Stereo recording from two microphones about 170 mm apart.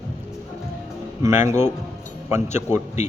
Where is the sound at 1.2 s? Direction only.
15° right (ahead or behind).